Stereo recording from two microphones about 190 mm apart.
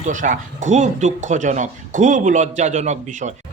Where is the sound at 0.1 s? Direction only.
40° right (ahead or behind).